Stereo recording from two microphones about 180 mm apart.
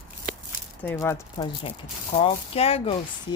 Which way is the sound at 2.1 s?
30° left (ahead or behind).